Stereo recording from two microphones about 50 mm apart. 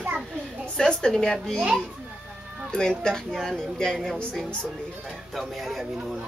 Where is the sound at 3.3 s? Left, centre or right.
Centre.